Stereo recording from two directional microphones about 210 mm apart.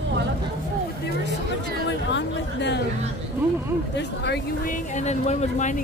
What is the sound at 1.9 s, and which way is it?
Music, 60° left (ahead or behind).